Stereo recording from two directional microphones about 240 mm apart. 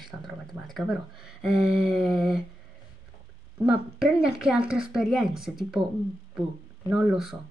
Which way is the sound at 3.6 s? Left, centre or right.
Centre.